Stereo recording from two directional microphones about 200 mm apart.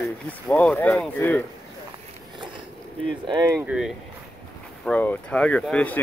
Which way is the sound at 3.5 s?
Centre (ahead or behind).